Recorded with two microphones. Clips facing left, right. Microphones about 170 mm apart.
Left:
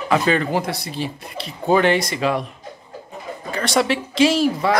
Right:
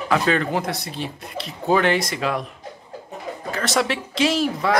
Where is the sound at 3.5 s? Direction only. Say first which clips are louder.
Left 3 dB; centre (ahead or behind).